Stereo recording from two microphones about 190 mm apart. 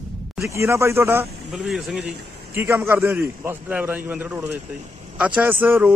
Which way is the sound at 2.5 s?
10° right (ahead or behind).